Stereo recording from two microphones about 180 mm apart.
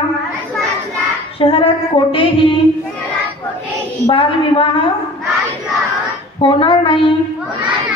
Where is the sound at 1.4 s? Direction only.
30° left (ahead or behind).